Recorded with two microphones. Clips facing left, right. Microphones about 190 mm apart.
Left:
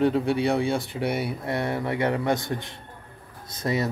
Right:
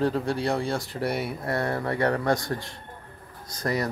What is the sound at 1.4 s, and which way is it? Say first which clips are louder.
Speech: even; 20° left (ahead or behind).